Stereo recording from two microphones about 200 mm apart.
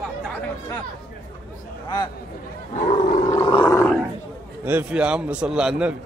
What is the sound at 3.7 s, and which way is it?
Roar, 15° left (ahead or behind).